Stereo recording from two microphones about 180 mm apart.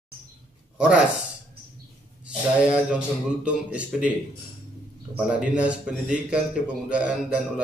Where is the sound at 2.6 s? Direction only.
5° right (ahead or behind).